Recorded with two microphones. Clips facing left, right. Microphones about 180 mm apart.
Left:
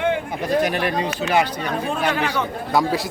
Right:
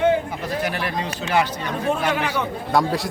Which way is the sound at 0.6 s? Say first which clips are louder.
Left 4 dB; 15° left (ahead or behind).